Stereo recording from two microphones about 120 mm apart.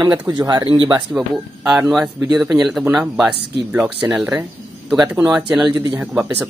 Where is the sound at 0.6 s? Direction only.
45° right (ahead or behind).